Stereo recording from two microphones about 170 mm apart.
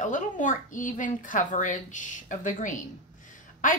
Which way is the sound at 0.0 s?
50° left (ahead or behind).